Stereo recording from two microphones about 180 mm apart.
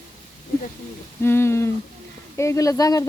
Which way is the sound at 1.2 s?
15° left (ahead or behind).